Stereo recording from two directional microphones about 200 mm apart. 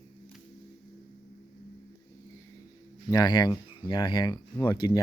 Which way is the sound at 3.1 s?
20° left (ahead or behind).